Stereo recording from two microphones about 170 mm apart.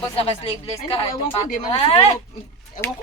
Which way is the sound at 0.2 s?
35° left (ahead or behind).